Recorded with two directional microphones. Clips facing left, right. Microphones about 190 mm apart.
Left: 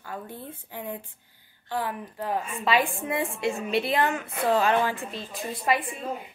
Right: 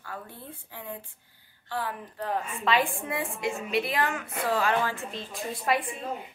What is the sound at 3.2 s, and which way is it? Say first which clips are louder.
A woman's voice: left 3 dB; 30° left (ahead or behind).